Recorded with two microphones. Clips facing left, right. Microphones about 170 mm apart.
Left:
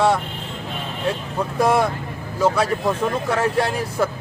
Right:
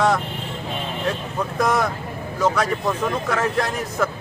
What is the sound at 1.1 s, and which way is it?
Speech, 30° left (ahead or behind).